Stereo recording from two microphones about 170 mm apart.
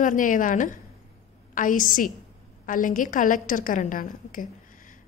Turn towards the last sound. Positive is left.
turn(degrees=50)  # may be behind; listen again after turning